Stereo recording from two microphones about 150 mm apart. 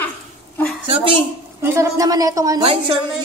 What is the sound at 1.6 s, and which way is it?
A woman's voice, 20° right (ahead or behind).